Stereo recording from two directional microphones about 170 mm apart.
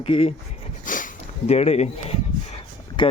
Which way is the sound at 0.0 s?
35° left (ahead or behind).